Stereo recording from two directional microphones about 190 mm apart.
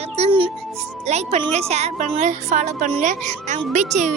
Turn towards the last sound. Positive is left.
turn(degrees=-40)  # may be behind; listen again after turning